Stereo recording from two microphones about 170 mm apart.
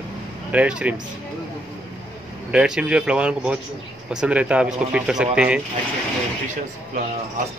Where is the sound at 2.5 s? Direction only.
5° right (ahead or behind).